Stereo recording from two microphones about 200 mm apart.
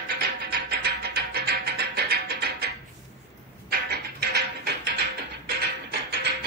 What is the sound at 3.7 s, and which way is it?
Music, 50° right (ahead or behind).